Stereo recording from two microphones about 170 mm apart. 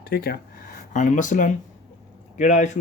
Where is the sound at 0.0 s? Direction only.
65° left (ahead or behind).